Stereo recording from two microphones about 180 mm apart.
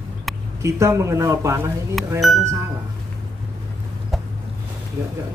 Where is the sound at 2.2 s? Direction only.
Centre (ahead or behind).